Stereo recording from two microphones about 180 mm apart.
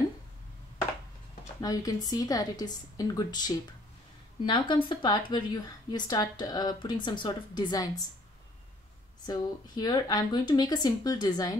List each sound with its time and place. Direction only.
1.6 s speech: 20° left (ahead or behind)
9.2 s speech: 20° left (ahead or behind)